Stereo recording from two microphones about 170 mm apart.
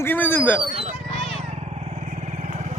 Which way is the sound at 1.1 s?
40° left (ahead or behind).